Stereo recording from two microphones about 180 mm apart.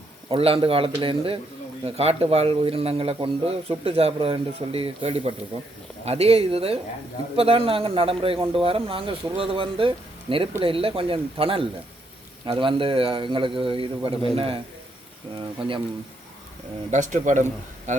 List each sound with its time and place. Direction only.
0.3 s a man's voice: 30° right (ahead or behind)
16.9 s speech: 45° right (ahead or behind)